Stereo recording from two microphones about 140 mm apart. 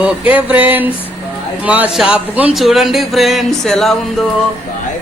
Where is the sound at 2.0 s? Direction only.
10° right (ahead or behind).